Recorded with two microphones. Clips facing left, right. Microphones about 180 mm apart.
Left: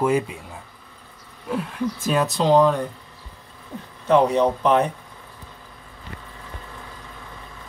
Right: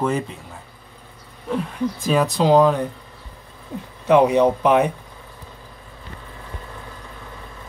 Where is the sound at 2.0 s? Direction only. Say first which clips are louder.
Right 3 dB; centre (ahead or behind).